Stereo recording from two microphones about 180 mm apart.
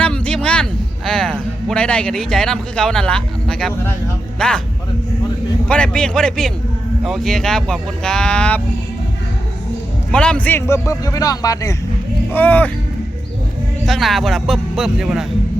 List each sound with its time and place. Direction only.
0.0 s music: 5° left (ahead or behind)
4.4 s speech: 5° left (ahead or behind)
5.6 s speech: 5° left (ahead or behind)
10.1 s a man's voice: 5° left (ahead or behind)
13.8 s speech: centre (ahead or behind)